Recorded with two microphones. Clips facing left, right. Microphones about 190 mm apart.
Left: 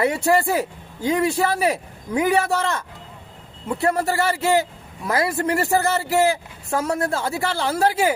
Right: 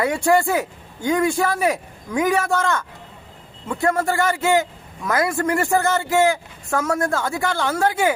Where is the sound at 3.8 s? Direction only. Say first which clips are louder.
Right 1 dB; 35° left (ahead or behind).